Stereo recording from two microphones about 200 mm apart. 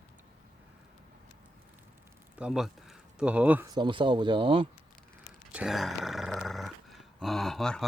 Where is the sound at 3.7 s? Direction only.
25° right (ahead or behind).